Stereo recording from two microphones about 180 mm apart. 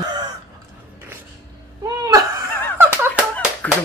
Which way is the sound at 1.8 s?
20° right (ahead or behind).